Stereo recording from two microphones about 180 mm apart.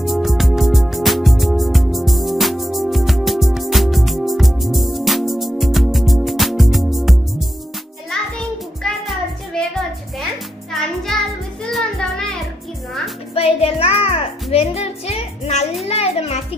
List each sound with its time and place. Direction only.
0.0 s music: centre (ahead or behind)
11.1 s music: centre (ahead or behind)
13.3 s music: 35° left (ahead or behind)